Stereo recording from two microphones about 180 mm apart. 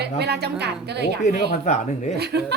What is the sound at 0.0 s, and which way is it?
A woman's voice, 65° right (ahead or behind).